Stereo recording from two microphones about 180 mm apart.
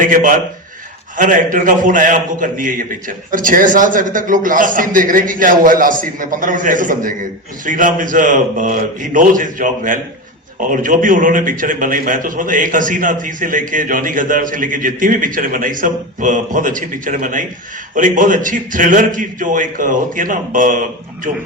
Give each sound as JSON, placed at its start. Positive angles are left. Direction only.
{"t": 0.0, "sound": "a man's voice", "side_deg": -50}